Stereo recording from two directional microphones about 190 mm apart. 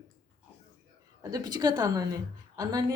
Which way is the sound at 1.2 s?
20° right (ahead or behind).